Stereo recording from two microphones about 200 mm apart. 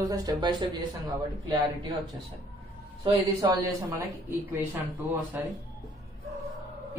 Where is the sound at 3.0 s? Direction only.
25° right (ahead or behind).